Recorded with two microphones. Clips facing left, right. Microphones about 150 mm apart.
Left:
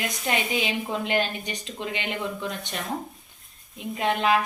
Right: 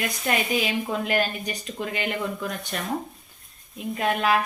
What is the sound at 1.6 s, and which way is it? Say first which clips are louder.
Speech: right 3 dB; 45° right (ahead or behind).